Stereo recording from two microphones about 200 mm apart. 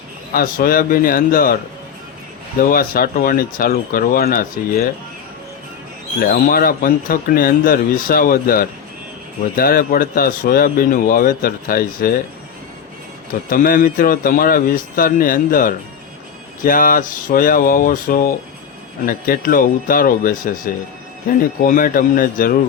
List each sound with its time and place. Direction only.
0.3 s a man's voice: 45° left (ahead or behind)
2.6 s a man's voice: 45° left (ahead or behind)
6.1 s a man's voice: 45° left (ahead or behind)
13.5 s a man's voice: 45° left (ahead or behind)
21.6 s a man's voice: 45° left (ahead or behind)